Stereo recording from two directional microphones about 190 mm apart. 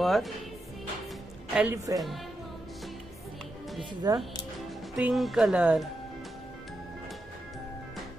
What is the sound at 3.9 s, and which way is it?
Speech, 20° right (ahead or behind).